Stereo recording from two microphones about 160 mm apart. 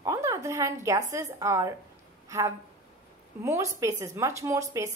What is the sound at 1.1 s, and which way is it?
A woman's voice, 20° right (ahead or behind).